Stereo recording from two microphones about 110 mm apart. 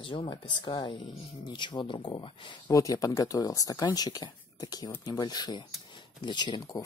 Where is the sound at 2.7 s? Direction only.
30° left (ahead or behind).